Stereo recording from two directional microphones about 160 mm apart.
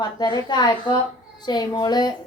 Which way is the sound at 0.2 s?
25° left (ahead or behind).